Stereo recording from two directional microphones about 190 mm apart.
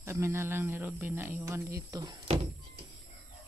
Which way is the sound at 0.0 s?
15° right (ahead or behind).